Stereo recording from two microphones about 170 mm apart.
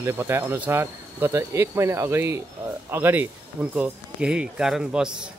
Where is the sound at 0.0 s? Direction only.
15° right (ahead or behind).